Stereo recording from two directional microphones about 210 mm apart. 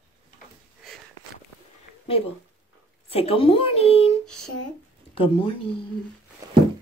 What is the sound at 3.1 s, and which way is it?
Speech, 25° left (ahead or behind).